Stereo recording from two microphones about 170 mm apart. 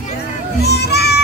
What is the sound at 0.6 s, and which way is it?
Music, 75° left (ahead or behind).